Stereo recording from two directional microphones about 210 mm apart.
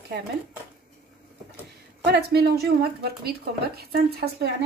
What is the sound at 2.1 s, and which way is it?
Speech, 50° right (ahead or behind).